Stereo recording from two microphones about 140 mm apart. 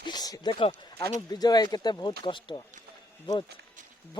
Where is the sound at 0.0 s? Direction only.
30° left (ahead or behind).